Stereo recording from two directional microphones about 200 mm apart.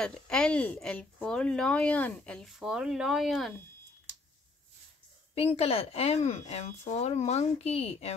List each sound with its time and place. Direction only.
0.0 s speech: 5° left (ahead or behind)
5.3 s speech: 30° left (ahead or behind)